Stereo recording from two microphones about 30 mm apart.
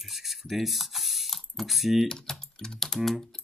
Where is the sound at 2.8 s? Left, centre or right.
Centre.